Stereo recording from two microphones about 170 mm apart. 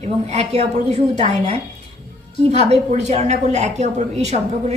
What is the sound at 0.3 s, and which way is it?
A woman's voice, 40° right (ahead or behind).